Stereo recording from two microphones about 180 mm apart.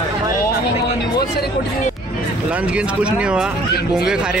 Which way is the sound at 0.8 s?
60° left (ahead or behind).